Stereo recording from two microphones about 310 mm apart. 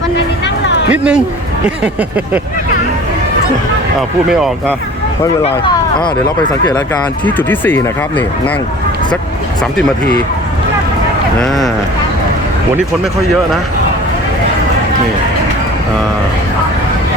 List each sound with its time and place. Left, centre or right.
0.4 s a sound: left
0.9 s speech: centre
4.3 s speech: centre
5.2 s speech: centre
11.3 s speech: centre